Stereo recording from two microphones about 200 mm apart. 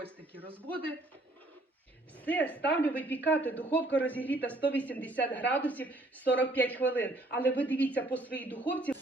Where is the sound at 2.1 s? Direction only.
10° left (ahead or behind).